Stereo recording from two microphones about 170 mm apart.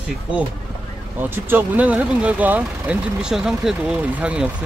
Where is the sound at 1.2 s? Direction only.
10° right (ahead or behind).